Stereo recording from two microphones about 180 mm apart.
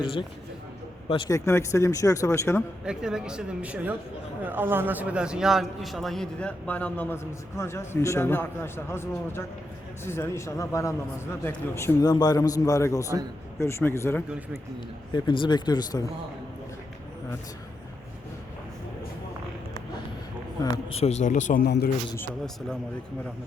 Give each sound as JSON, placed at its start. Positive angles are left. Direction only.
{"t": 0.0, "sound": "speech", "side_deg": 25}
{"t": 1.3, "sound": "a man's voice", "side_deg": 15}
{"t": 2.8, "sound": "a man's voice", "side_deg": -5}
{"t": 14.3, "sound": "a man's voice", "side_deg": -10}
{"t": 15.1, "sound": "speech", "side_deg": 25}
{"t": 20.6, "sound": "speech", "side_deg": 20}
{"t": 20.9, "sound": "speech", "side_deg": 35}
{"t": 21.6, "sound": "speech", "side_deg": 60}